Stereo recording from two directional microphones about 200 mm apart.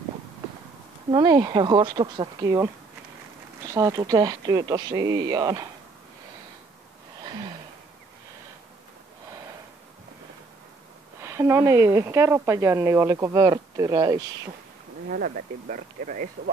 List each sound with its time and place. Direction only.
1.1 s speech: 20° right (ahead or behind)
11.1 s speech: 15° right (ahead or behind)
15.0 s speech: 45° right (ahead or behind)